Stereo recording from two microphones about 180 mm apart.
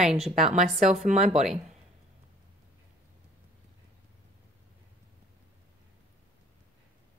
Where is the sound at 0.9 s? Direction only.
40° right (ahead or behind).